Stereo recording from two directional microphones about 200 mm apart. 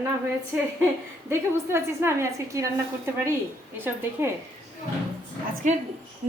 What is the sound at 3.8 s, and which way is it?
Speech, 10° right (ahead or behind).